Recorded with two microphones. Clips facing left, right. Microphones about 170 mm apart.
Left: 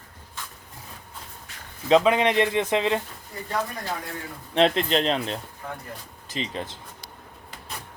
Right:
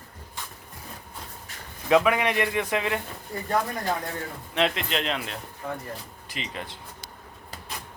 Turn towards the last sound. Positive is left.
turn(degrees=30)  # may be behind; listen again after turning